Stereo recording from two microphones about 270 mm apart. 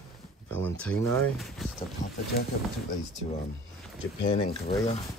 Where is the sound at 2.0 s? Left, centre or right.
Left.